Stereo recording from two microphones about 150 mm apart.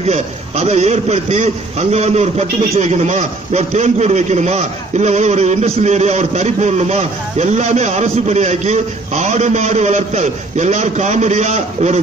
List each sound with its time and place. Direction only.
0.0 s a man's voice: 45° right (ahead or behind)